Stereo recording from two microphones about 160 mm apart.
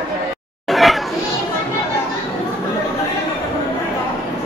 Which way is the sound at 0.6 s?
Centre (ahead or behind).